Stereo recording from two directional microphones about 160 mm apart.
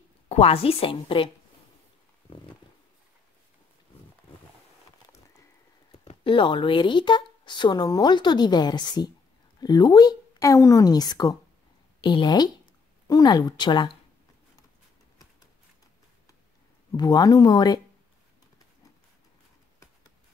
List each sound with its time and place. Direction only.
0.3 s a woman's voice: 35° left (ahead or behind)
2.3 s wild animals: 35° left (ahead or behind)
5.9 s speech: 35° left (ahead or behind)
16.9 s speech: 25° left (ahead or behind)